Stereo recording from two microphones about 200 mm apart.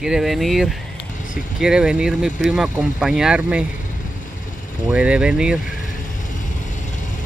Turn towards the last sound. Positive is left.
turn(degrees=40)  # may be behind; listen again after turning